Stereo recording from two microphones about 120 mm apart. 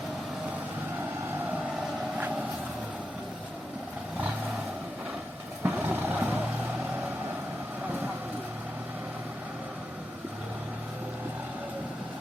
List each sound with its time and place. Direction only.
5.6 s vehicle: 15° right (ahead or behind)